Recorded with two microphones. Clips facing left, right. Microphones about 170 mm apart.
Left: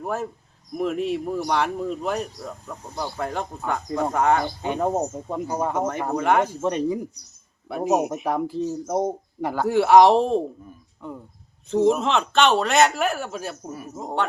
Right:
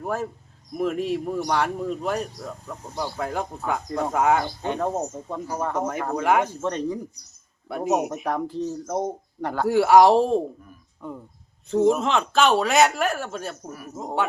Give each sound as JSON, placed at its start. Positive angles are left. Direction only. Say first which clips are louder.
{"t": 0.0, "sound": "speech", "louder": "even", "side_deg": 0}
{"t": 4.6, "sound": "speech", "louder": "left 2 dB", "side_deg": 10}
{"t": 6.1, "sound": "speech", "louder": "left 1 dB", "side_deg": 0}
{"t": 6.5, "sound": "speech", "louder": "left 3 dB", "side_deg": 10}
{"t": 11.7, "sound": "speech", "louder": "even", "side_deg": 0}
{"t": 13.7, "sound": "speech", "louder": "left 2 dB", "side_deg": 25}
{"t": 13.9, "sound": "speech", "louder": "even", "side_deg": 0}